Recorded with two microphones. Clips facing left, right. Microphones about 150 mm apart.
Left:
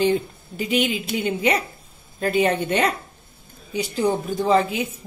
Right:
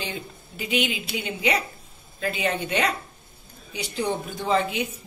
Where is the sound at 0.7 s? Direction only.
50° left (ahead or behind).